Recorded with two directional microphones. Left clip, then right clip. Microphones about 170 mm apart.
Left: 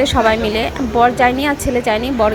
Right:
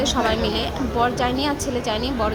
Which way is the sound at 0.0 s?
25° left (ahead or behind).